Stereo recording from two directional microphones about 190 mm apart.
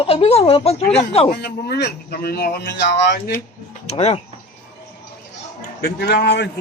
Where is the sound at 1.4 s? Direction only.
55° left (ahead or behind).